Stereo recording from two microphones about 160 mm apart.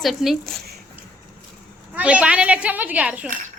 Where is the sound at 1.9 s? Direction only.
5° right (ahead or behind).